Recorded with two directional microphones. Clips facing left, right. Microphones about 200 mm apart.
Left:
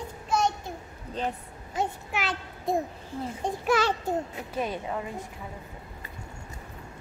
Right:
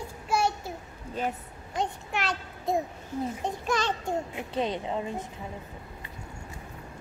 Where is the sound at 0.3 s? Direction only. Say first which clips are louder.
Even; 10° right (ahead or behind).